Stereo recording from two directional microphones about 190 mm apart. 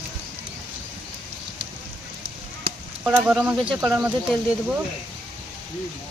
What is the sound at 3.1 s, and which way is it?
Speech, 5° right (ahead or behind).